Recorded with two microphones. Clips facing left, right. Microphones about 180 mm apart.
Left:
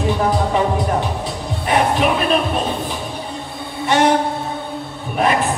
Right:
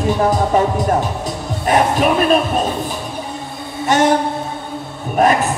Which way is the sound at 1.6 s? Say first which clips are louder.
Right 2 dB; 45° right (ahead or behind).